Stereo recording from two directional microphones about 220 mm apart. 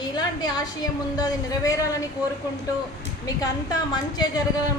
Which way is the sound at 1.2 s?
15° left (ahead or behind).